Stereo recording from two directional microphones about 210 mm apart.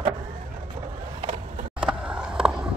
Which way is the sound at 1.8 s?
5° right (ahead or behind).